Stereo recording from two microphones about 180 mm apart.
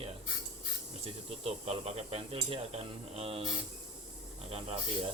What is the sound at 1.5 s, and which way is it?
Speech, 35° right (ahead or behind).